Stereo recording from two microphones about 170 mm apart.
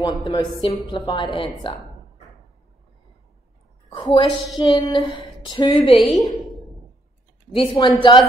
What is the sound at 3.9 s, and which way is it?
A woman's voice, 30° left (ahead or behind).